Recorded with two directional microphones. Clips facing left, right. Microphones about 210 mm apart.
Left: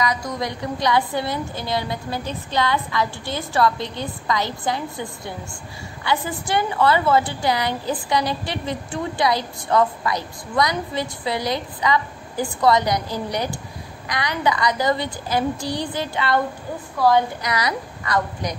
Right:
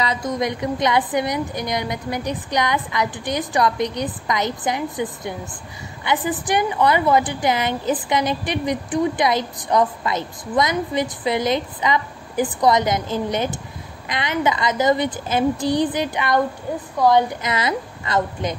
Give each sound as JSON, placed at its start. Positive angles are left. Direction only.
{"t": 0.0, "sound": "a woman's voice", "side_deg": -25}